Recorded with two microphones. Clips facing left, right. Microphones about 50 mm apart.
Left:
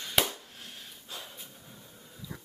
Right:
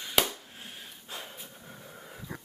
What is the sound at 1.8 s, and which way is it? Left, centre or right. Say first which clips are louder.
Dog: right 5 dB; right.